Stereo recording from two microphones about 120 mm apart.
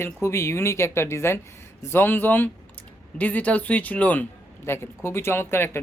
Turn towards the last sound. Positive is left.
turn(degrees=20)  # may be behind; listen again after turning